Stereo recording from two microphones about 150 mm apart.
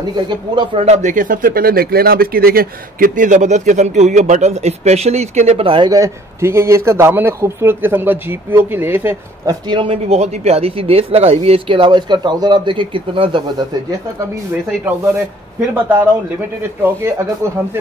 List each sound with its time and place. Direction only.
0.1 s speech: 30° right (ahead or behind)
0.8 s speech: 50° right (ahead or behind)
5.9 s a man's voice: 20° right (ahead or behind)
9.7 s speech: 35° right (ahead or behind)
15.7 s a man's voice: 10° right (ahead or behind)